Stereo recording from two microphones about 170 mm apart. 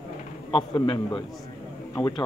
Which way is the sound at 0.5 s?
30° left (ahead or behind).